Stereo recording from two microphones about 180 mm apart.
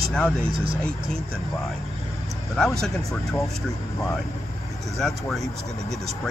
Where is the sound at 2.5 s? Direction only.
5° left (ahead or behind).